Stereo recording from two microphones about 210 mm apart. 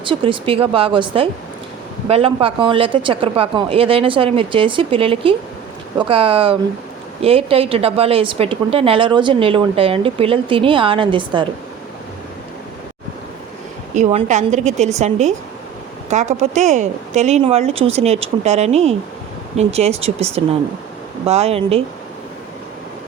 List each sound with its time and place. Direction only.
0.0 s a woman's voice: 25° right (ahead or behind)
13.9 s a woman's voice: 35° right (ahead or behind)